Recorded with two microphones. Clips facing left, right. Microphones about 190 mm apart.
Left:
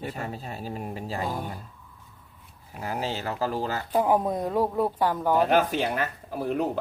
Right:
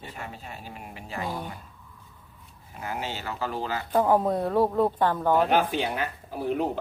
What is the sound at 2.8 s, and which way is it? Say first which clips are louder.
Speech: left 3 dB; 35° left (ahead or behind).